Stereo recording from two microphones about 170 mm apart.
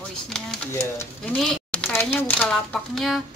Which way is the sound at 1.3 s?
5° left (ahead or behind).